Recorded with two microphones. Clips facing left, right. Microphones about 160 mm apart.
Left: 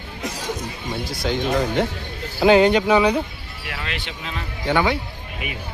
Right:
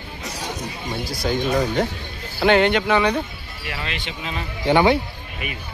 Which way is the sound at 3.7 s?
Centre (ahead or behind).